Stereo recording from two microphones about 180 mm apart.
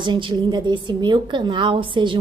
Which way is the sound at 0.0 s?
25° right (ahead or behind).